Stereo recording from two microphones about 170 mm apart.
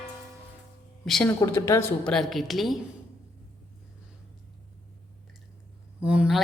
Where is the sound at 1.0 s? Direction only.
Centre (ahead or behind).